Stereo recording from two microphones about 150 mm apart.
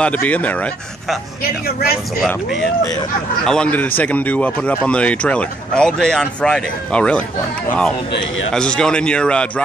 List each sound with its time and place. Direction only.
0.0 s speech: 10° left (ahead or behind)
1.4 s speech: 90° left
2.2 s speech: centre (ahead or behind)
8.5 s speech: 5° left (ahead or behind)